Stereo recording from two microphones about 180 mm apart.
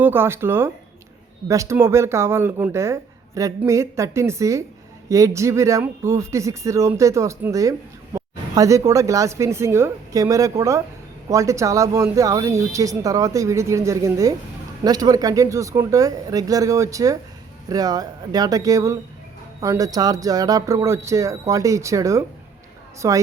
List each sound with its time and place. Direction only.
0.0 s speech: 10° right (ahead or behind)